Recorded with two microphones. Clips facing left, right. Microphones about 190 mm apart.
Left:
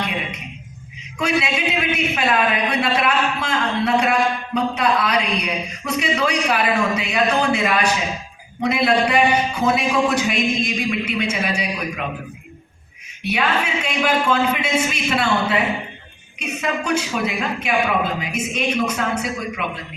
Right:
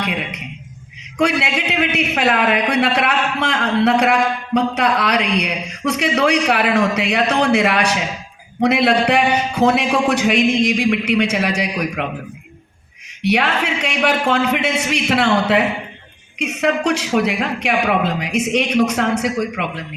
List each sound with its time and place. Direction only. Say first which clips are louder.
0.0 s a man's voice: right 2 dB; 70° right (ahead or behind)
13.2 s a man's voice: right 4 dB; 75° right (ahead or behind)